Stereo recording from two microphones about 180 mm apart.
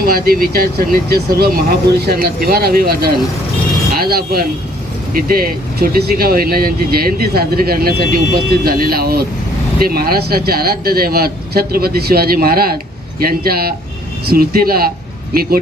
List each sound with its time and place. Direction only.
0.0 s speech: 55° right (ahead or behind)
3.9 s vehicle: 55° right (ahead or behind)
5.1 s speech: 55° right (ahead or behind)